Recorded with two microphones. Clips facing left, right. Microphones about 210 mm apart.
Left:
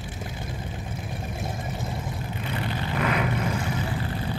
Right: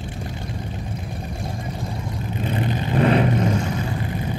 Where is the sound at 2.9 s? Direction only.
30° right (ahead or behind).